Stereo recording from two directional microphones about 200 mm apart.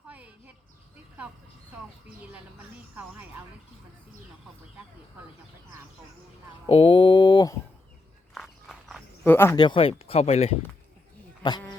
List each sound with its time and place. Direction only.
0.1 s a sound: 10° right (ahead or behind)
2.9 s speech: 10° right (ahead or behind)
6.7 s a sound: 25° left (ahead or behind)
8.4 s walk: centre (ahead or behind)
9.2 s speech: 10° left (ahead or behind); by 10.6 s 30° left (ahead or behind)
11.4 s speech: 20° left (ahead or behind)